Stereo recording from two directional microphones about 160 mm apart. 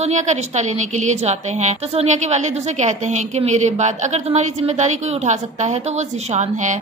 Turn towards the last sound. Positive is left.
turn(degrees=-45)  # may be behind; listen again after turning